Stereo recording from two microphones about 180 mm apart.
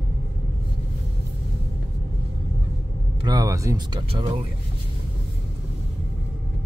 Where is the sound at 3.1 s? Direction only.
20° right (ahead or behind).